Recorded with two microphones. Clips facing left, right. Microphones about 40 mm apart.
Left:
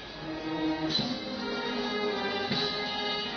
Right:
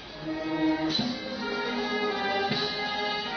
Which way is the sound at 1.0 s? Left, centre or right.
Centre.